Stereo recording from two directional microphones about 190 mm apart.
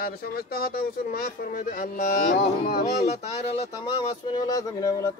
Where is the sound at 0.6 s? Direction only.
50° left (ahead or behind).